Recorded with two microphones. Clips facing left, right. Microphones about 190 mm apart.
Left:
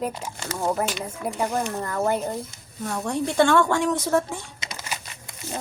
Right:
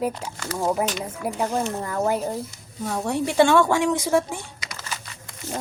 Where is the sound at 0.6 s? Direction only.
Centre (ahead or behind).